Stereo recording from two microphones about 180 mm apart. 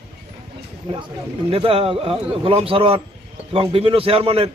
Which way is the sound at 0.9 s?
30° right (ahead or behind).